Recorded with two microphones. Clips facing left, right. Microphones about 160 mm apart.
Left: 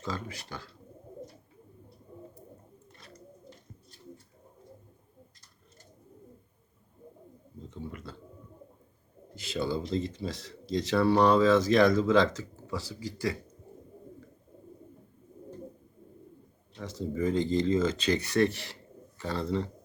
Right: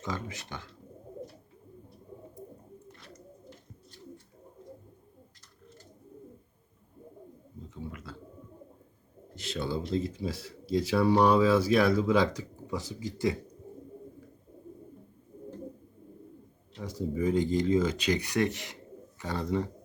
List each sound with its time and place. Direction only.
0.0 s speech: 20° right (ahead or behind)
7.7 s a sound: 5° right (ahead or behind)
9.3 s speech: centre (ahead or behind); by 13.3 s 20° right (ahead or behind)
16.7 s speech: 10° right (ahead or behind)